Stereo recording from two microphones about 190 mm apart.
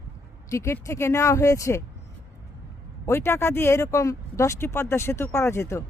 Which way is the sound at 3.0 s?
15° left (ahead or behind).